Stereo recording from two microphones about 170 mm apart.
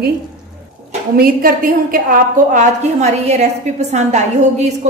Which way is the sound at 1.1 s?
60° right (ahead or behind).